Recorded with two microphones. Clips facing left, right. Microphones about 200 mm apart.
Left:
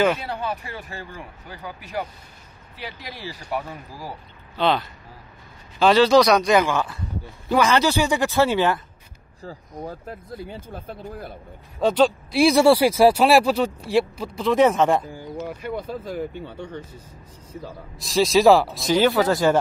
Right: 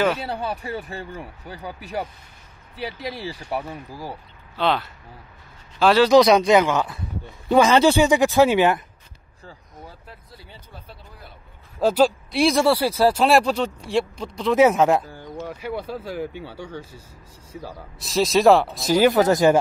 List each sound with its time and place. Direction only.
0.3 s speech: 30° right (ahead or behind)
4.6 s speech: centre (ahead or behind)
6.1 s speech: 20° right (ahead or behind)
9.8 s speech: 50° left (ahead or behind)
11.8 s speech: 5° right (ahead or behind)
12.6 s speech: 10° left (ahead or behind); by 15.0 s 5° right (ahead or behind)
15.0 s a sound: 10° left (ahead or behind)
15.9 s speech: 5° right (ahead or behind)
18.9 s speech: 15° right (ahead or behind)